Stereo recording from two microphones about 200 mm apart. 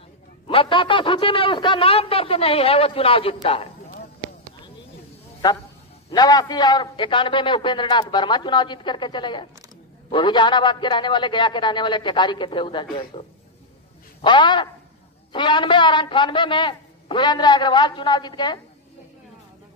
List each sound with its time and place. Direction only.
0.5 s a man's voice: 25° left (ahead or behind)
6.0 s a man's voice: 20° left (ahead or behind)